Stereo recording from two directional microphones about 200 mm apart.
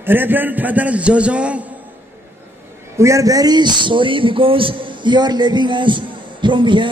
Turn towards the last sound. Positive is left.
turn(degrees=-25)  # may be behind; listen again after turning